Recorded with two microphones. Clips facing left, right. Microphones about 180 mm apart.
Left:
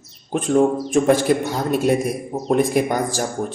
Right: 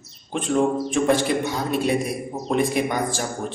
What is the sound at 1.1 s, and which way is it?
Speech, 45° left (ahead or behind).